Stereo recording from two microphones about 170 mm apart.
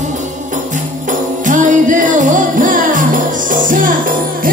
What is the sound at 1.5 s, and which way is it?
Music, 50° right (ahead or behind).